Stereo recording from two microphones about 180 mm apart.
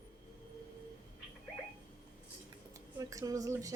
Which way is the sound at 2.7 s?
20° right (ahead or behind).